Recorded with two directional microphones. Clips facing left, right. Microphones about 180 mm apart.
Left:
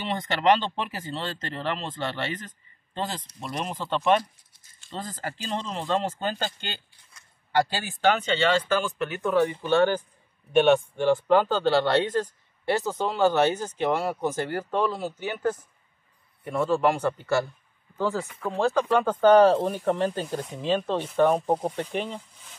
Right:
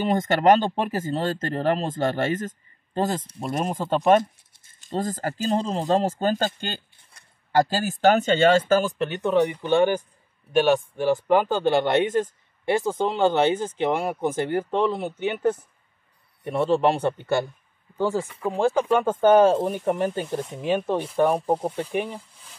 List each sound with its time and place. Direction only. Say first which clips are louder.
0.0 s speech: right 5 dB; 45° right (ahead or behind)
9.2 s speech: right 2 dB; 20° right (ahead or behind)
10.5 s speech: left 1 dB; centre (ahead or behind)